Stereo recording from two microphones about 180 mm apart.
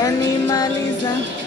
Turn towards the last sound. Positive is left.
turn(degrees=20)  # may be behind; listen again after turning